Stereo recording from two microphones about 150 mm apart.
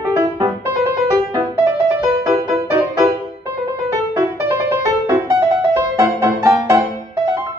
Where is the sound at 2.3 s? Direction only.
25° right (ahead or behind).